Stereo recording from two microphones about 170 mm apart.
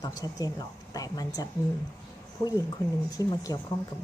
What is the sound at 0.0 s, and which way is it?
A woman's voice, 20° left (ahead or behind).